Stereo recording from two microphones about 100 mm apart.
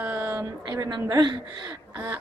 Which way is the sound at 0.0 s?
15° right (ahead or behind).